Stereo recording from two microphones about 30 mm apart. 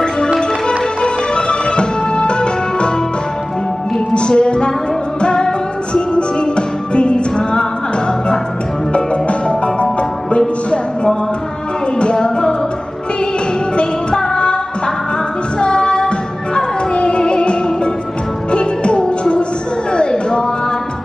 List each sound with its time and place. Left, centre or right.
0.4 s music: left
4.1 s music: left
8.9 s music: left
12.0 s music: left
15.6 s music: left
19.9 s a sound: left